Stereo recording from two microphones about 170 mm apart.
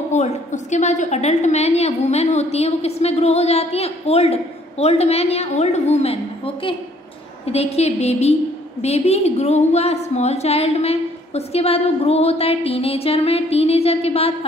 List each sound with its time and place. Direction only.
0.1 s a woman's voice: 45° left (ahead or behind)